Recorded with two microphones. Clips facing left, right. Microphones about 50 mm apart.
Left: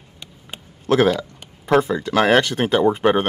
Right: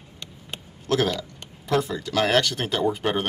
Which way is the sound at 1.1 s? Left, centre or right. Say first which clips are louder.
Left 8 dB; left.